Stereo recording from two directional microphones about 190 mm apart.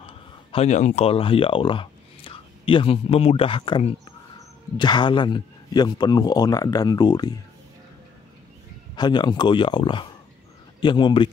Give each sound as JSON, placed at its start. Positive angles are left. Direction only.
{"t": 0.0, "sound": "a man's voice", "side_deg": 30}
{"t": 8.9, "sound": "a man's voice", "side_deg": 20}